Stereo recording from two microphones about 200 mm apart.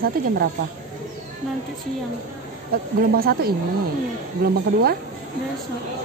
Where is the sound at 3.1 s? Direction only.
50° right (ahead or behind).